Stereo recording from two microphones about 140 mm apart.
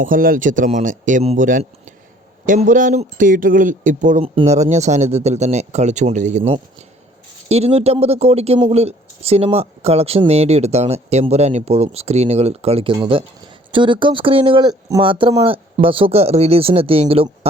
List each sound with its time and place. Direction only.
0.0 s speech: 80° right
4.2 s speech: 50° right (ahead or behind)